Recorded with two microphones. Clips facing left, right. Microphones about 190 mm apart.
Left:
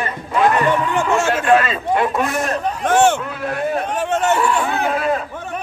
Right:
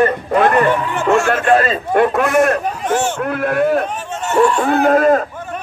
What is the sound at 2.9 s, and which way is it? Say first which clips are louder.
Speech: left 5 dB; 60° left (ahead or behind).